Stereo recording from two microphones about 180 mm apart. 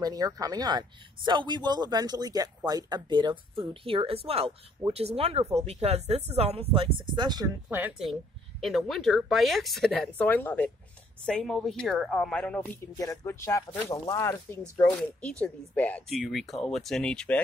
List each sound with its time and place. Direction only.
0.0 s speech: 20° right (ahead or behind)
7.7 s a woman's voice: 5° right (ahead or behind)